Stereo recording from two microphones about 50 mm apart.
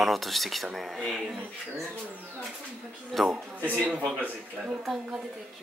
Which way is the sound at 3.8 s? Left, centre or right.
Right.